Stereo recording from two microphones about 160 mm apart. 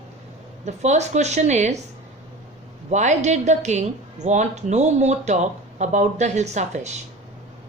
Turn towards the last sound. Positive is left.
turn(degrees=-45)  # may be behind; listen again after turning